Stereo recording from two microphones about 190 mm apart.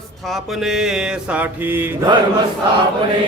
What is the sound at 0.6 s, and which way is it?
Mantra, centre (ahead or behind).